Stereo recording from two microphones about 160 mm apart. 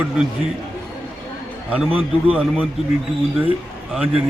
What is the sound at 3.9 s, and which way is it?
Speech, 10° right (ahead or behind).